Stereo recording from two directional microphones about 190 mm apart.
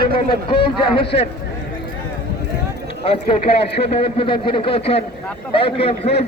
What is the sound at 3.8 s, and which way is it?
A man's voice, 30° left (ahead or behind).